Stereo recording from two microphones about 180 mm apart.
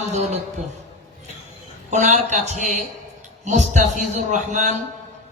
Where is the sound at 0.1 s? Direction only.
40° right (ahead or behind).